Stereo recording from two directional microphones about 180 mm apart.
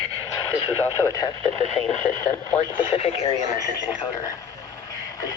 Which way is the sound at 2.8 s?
30° left (ahead or behind).